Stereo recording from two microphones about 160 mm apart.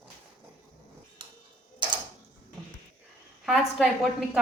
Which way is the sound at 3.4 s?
Centre (ahead or behind).